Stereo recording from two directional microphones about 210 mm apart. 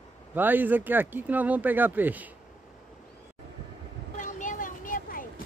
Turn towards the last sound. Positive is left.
turn(degrees=40)  # may be behind; listen again after turning